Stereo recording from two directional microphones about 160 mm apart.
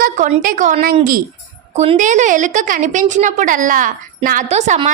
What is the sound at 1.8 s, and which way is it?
A woman's voice, 45° right (ahead or behind).